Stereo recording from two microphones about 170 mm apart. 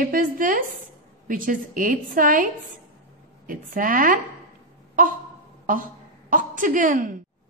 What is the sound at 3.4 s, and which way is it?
Speech, 50° right (ahead or behind).